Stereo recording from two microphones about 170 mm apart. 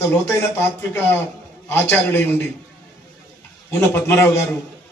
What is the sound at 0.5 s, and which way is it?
Speech, 15° left (ahead or behind).